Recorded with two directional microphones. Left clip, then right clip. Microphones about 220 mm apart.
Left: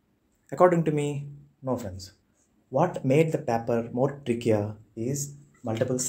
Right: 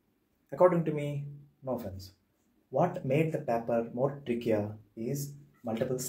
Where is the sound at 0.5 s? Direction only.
45° left (ahead or behind).